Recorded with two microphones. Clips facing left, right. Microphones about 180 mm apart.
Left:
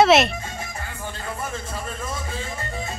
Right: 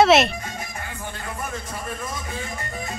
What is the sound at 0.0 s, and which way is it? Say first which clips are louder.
Speech: even; centre (ahead or behind).